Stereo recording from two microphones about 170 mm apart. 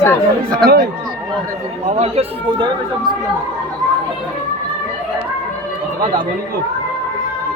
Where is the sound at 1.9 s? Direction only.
40° right (ahead or behind).